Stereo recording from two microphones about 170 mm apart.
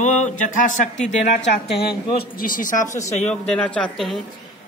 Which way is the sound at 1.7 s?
70° left (ahead or behind).